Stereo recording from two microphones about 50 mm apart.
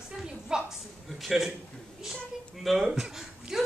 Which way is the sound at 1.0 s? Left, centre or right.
Centre.